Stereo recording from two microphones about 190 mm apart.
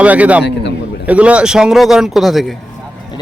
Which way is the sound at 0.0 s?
5° right (ahead or behind).